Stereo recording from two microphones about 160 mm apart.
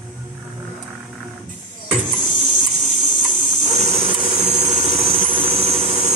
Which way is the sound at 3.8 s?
35° right (ahead or behind).